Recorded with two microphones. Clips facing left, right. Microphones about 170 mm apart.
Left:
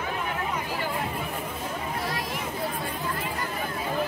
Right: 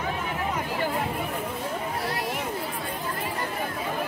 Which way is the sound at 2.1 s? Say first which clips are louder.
Right 2 dB; 65° right (ahead or behind).